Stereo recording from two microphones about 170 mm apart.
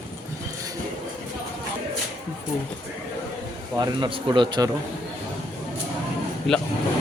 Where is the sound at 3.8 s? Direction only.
30° right (ahead or behind).